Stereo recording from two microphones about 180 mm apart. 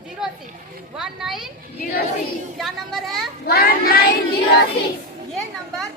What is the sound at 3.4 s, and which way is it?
Speech, 60° left (ahead or behind).